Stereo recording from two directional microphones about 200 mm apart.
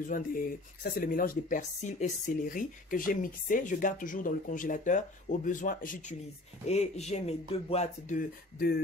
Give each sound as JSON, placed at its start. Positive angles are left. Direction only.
{"t": 0.0, "sound": "speech", "side_deg": 45}